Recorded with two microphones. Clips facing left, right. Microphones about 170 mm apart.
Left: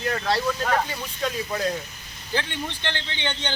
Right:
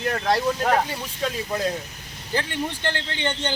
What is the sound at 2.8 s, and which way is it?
Speech, 40° right (ahead or behind).